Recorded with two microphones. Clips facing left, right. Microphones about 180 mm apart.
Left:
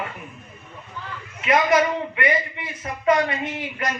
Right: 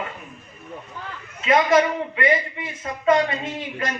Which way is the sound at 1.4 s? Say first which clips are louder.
Right 1 dB; 25° right (ahead or behind).